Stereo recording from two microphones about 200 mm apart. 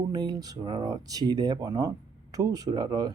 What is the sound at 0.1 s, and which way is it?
Speech, 20° right (ahead or behind).